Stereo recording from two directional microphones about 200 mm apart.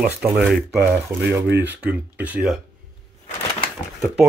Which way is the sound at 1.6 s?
10° right (ahead or behind).